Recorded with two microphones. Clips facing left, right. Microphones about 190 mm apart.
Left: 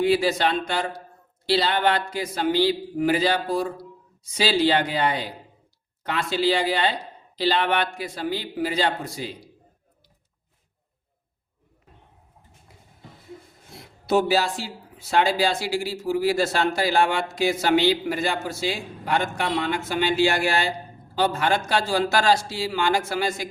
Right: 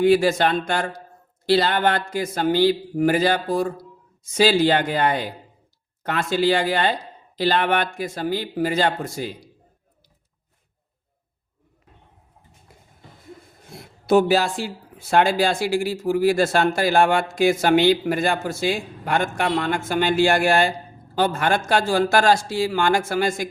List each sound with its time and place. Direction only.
0.0 s speech: 50° right (ahead or behind)
13.7 s speech: 50° right (ahead or behind)